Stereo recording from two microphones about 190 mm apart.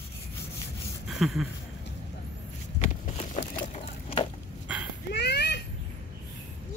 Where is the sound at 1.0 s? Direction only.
Centre (ahead or behind).